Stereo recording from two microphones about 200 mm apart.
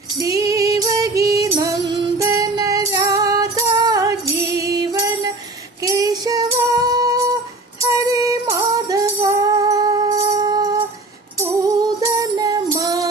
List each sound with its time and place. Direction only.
0.2 s female singing: 15° right (ahead or behind)
4.5 s music: 15° right (ahead or behind)